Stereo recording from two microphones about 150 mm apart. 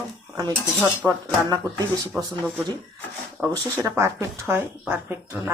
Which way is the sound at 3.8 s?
20° right (ahead or behind).